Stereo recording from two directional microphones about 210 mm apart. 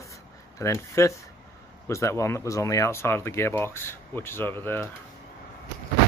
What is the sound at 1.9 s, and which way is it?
Speech, 15° left (ahead or behind).